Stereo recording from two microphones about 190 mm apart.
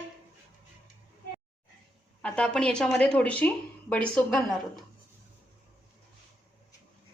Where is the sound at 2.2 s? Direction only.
5° left (ahead or behind).